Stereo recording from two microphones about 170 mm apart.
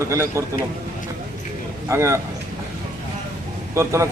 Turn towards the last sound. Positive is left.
turn(degrees=-15)  # may be behind; listen again after turning